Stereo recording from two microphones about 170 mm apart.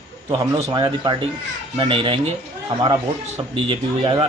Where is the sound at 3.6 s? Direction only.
30° right (ahead or behind).